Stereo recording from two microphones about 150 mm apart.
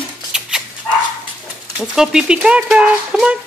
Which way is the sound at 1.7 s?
5° right (ahead or behind).